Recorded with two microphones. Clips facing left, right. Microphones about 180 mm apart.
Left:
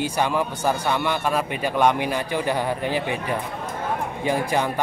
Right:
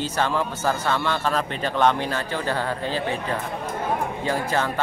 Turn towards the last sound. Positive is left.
turn(degrees=15)  # may be behind; listen again after turning